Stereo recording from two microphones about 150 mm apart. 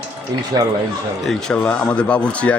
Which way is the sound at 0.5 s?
25° right (ahead or behind).